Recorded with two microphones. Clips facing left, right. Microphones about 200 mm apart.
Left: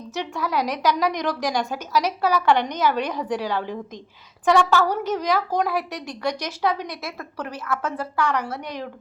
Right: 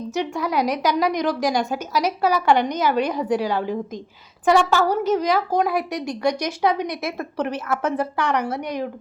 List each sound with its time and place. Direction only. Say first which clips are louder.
0.1 s speech: right 2 dB; 10° right (ahead or behind)